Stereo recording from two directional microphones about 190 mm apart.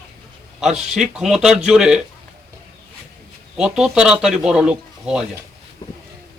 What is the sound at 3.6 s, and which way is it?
Speech, 5° right (ahead or behind).